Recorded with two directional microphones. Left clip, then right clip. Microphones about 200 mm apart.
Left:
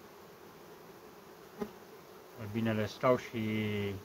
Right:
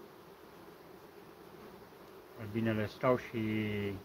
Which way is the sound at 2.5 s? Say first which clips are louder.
Left 1 dB; 15° left (ahead or behind).